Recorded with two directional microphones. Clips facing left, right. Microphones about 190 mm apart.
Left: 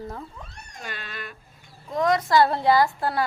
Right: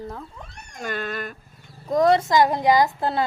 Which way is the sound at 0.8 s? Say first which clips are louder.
Right 9 dB; 50° right (ahead or behind).